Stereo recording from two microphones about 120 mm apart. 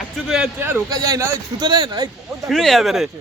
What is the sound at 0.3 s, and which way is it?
Speech, 5° right (ahead or behind).